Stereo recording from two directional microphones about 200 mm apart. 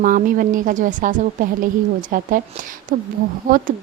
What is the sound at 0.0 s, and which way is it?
A woman's voice, 40° right (ahead or behind).